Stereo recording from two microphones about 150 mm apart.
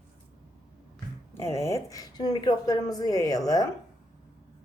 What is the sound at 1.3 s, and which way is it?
A woman's voice, 20° left (ahead or behind).